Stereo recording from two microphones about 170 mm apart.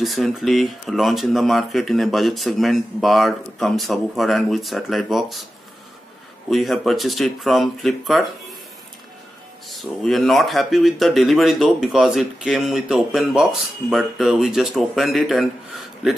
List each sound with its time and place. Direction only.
0.0 s speech: centre (ahead or behind)
6.5 s speech: centre (ahead or behind)
9.7 s speech: centre (ahead or behind)